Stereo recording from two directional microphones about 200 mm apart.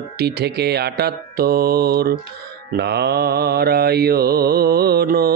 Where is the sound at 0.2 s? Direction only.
55° right (ahead or behind).